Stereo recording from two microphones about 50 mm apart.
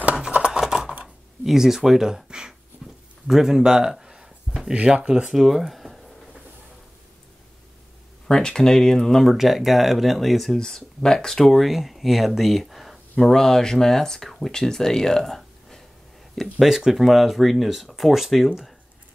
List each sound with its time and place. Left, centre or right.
0.4 s computer keyboard: centre
1.4 s speech: centre
3.3 s a sound: centre
4.7 s speech: right
5.3 s a sound: centre
8.3 s speech: centre
10.6 s speech: centre
16.6 s speech: centre